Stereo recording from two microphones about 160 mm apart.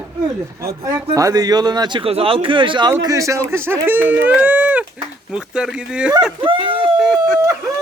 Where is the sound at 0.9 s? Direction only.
20° right (ahead or behind); by 6.1 s 5° right (ahead or behind).